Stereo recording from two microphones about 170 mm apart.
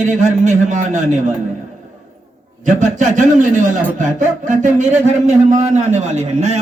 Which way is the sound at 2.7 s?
50° right (ahead or behind).